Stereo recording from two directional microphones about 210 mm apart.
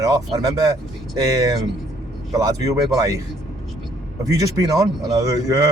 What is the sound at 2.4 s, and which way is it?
Speech, 15° right (ahead or behind).